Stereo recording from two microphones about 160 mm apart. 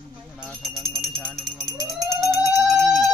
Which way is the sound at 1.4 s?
Centre (ahead or behind).